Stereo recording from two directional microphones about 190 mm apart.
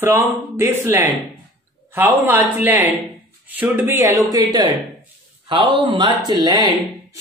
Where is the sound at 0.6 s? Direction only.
15° right (ahead or behind).